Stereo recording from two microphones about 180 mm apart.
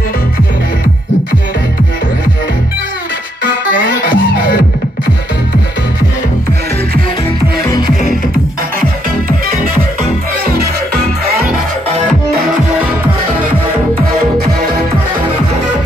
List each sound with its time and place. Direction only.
3.7 s music: 50° left (ahead or behind)
7.6 s music: 20° left (ahead or behind)